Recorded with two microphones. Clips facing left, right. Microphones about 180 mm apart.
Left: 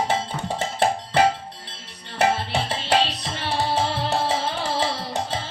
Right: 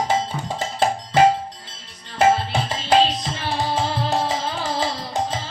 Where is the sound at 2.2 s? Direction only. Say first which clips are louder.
Right 4 dB; 70° left (ahead or behind).